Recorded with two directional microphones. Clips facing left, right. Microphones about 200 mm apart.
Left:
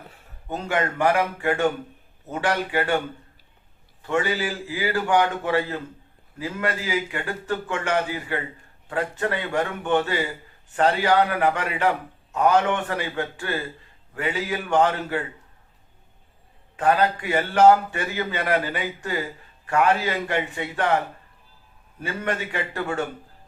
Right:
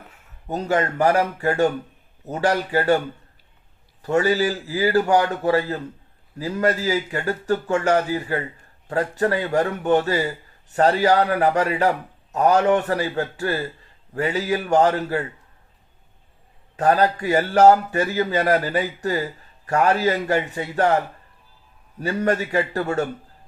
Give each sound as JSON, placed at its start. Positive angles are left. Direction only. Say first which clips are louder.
{"t": 0.4, "sound": "a man's voice", "louder": "right 3 dB", "side_deg": -40}
{"t": 4.0, "sound": "a man's voice", "louder": "right 5 dB", "side_deg": -40}
{"t": 16.7, "sound": "a man's voice", "louder": "right 2 dB", "side_deg": -40}
{"t": 22.0, "sound": "a man's voice", "louder": "right 6 dB", "side_deg": -40}